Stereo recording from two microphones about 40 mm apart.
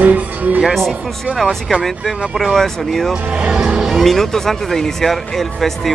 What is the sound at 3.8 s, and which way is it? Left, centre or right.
Speech, centre.